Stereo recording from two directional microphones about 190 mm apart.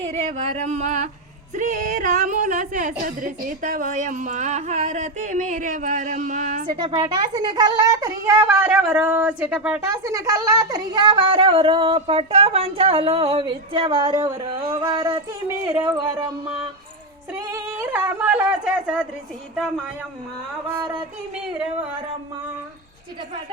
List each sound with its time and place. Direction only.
0.1 s speech: 35° right (ahead or behind)
6.7 s a woman's voice: 25° right (ahead or behind)
17.5 s speech: 10° right (ahead or behind)